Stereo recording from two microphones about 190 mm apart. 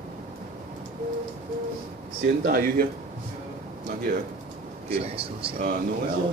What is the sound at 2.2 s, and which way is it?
Speech, 50° right (ahead or behind).